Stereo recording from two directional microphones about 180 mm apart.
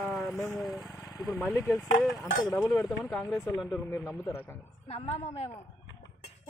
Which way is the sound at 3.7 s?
15° left (ahead or behind).